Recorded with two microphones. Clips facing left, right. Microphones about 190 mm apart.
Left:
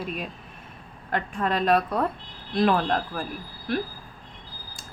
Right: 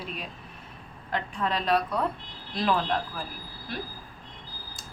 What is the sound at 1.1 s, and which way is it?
A woman's voice, 50° left (ahead or behind).